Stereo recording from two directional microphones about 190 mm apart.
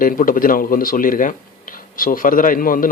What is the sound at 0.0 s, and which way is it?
Speech, 45° left (ahead or behind).